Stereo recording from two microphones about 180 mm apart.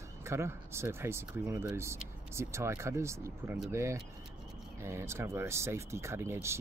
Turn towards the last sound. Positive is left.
turn(degrees=-15)  # may be behind; listen again after turning